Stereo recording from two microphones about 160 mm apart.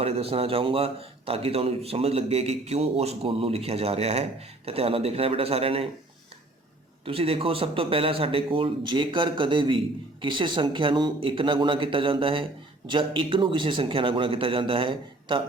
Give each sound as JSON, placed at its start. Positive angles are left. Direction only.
{"t": 0.0, "sound": "a man's voice", "side_deg": -40}
{"t": 7.0, "sound": "a man's voice", "side_deg": -35}